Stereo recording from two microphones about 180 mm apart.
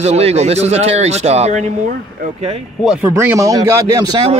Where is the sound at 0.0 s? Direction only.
35° right (ahead or behind).